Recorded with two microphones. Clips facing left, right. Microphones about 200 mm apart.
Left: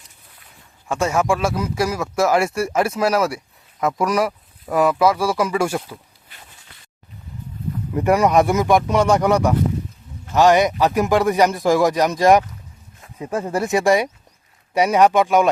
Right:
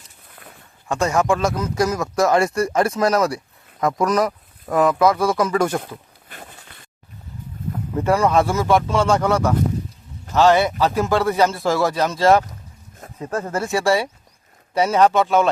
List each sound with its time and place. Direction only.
0.9 s speech: 5° left (ahead or behind)
6.2 s a sound: 50° right (ahead or behind)
7.9 s speech: 15° left (ahead or behind)